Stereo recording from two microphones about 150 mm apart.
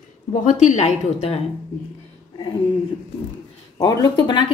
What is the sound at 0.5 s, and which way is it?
Speech, 55° left (ahead or behind).